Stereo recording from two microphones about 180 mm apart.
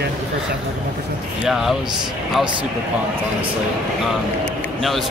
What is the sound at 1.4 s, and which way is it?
Speech, centre (ahead or behind).